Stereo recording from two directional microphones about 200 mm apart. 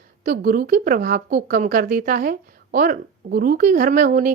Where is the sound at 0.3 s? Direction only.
45° right (ahead or behind).